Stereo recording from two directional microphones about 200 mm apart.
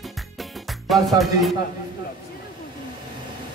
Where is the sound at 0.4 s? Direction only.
Centre (ahead or behind).